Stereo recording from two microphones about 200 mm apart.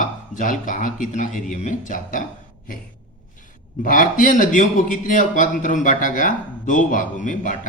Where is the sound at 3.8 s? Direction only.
40° left (ahead or behind).